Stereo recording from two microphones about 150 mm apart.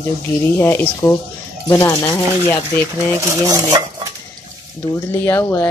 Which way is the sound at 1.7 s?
25° left (ahead or behind).